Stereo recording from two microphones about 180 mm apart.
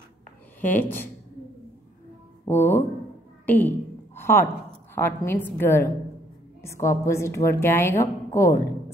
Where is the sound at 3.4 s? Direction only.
10° left (ahead or behind).